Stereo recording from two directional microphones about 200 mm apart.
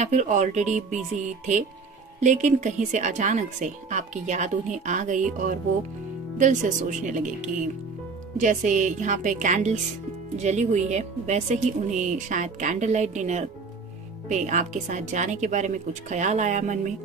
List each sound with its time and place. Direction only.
0.0 s a woman's voice: 35° right (ahead or behind)